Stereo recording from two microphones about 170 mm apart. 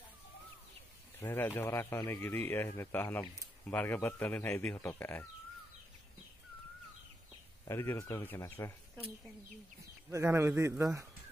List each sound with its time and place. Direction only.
1.2 s speech: 10° left (ahead or behind)
7.6 s speech: 15° left (ahead or behind)
10.1 s a man's voice: 15° right (ahead or behind)